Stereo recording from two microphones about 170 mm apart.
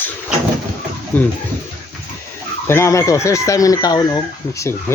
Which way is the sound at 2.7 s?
15° left (ahead or behind).